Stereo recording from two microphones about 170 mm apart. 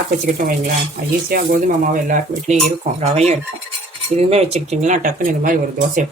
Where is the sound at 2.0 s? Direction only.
50° right (ahead or behind).